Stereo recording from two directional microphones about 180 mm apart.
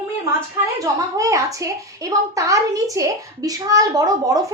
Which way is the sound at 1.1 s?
20° right (ahead or behind).